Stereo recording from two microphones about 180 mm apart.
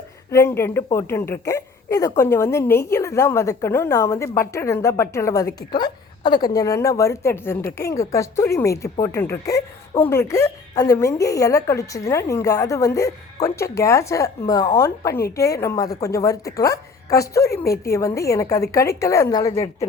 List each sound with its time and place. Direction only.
0.3 s a woman's voice: 15° left (ahead or behind)